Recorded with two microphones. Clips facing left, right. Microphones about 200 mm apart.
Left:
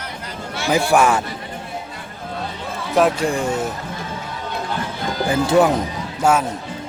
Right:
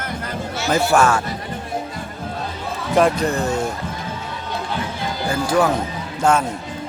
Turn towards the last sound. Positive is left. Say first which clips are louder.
# even
turn(degrees=5)  # may be behind; listen again after turning